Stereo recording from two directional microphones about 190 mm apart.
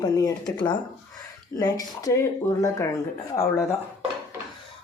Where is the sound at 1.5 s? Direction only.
20° left (ahead or behind).